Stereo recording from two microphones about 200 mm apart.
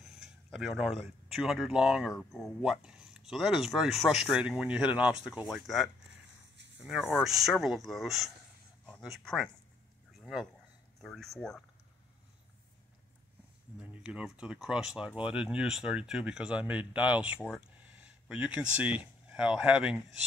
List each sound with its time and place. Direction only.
0.0 s speech: centre (ahead or behind)
7.2 s speech: centre (ahead or behind)
13.7 s speech: 5° right (ahead or behind)